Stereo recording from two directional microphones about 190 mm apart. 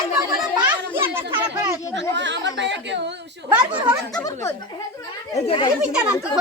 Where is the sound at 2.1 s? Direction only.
70° right (ahead or behind).